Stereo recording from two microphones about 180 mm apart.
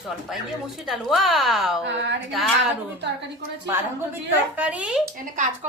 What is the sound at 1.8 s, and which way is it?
Speech, 80° right.